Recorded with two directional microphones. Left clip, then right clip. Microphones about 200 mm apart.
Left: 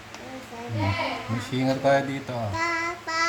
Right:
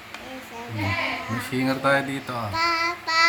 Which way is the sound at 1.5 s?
5° left (ahead or behind).